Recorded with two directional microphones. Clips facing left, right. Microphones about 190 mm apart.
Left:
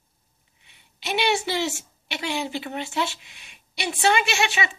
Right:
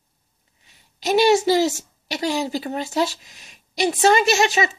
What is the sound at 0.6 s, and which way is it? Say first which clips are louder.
A woman's voice: right 8 dB; 40° right (ahead or behind).